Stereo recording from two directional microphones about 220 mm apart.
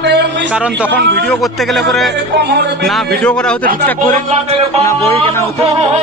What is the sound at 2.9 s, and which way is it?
Speech, centre (ahead or behind).